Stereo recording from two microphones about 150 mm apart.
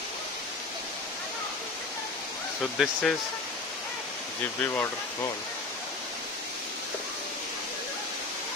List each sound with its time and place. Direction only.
2.8 s speech: 5° left (ahead or behind)
4.6 s speech: 15° left (ahead or behind)